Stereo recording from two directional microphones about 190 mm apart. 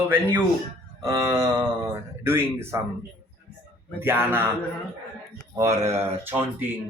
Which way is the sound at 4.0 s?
10° right (ahead or behind).